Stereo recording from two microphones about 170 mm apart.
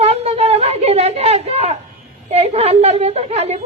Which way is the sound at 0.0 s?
40° right (ahead or behind).